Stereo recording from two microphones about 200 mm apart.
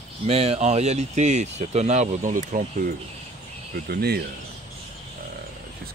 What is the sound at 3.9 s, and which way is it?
Speech, 50° right (ahead or behind).